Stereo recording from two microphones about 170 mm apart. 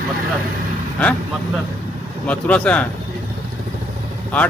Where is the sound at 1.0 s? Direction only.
5° left (ahead or behind).